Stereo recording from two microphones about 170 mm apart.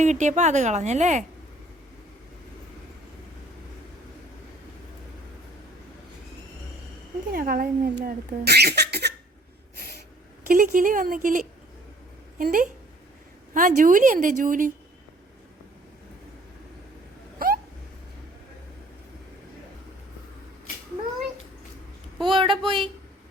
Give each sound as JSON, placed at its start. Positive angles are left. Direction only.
{"t": 0.0, "sound": "a woman's voice", "side_deg": -45}
{"t": 7.3, "sound": "speech", "side_deg": -60}
{"t": 9.7, "sound": "a sound", "side_deg": -65}
{"t": 10.4, "sound": "a woman's voice", "side_deg": -55}
{"t": 17.4, "sound": "a sound", "side_deg": -60}
{"t": 22.3, "sound": "speech", "side_deg": -30}